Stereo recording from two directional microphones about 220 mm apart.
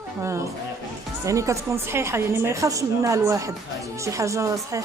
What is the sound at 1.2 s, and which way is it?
A woman's voice, 15° right (ahead or behind).